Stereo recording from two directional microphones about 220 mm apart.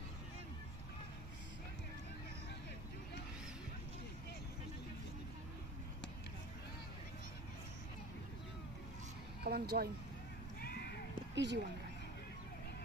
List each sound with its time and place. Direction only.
9.4 s speech: 45° right (ahead or behind)
10.6 s a sound: 45° left (ahead or behind)
11.3 s speech: 55° right (ahead or behind)